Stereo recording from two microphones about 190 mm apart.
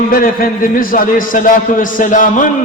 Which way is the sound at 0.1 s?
50° left (ahead or behind).